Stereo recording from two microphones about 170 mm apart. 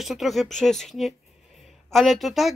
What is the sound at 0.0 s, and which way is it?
Speech, centre (ahead or behind).